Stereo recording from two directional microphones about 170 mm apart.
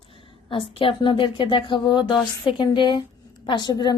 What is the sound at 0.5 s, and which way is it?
A woman's voice, 30° left (ahead or behind).